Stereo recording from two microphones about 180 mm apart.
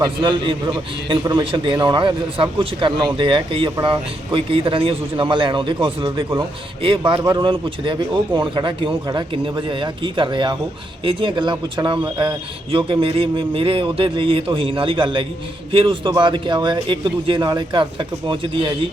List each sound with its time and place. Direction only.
0.0 s a man's voice: 25° right (ahead or behind)